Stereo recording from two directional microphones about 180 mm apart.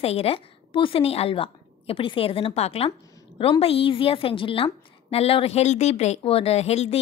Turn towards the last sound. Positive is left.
turn(degrees=35)  # may be behind; listen again after turning